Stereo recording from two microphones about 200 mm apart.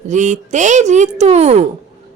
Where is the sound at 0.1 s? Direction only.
35° right (ahead or behind).